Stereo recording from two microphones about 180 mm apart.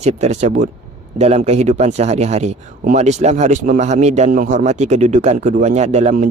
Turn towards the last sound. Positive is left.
turn(degrees=-40)  # may be behind; listen again after turning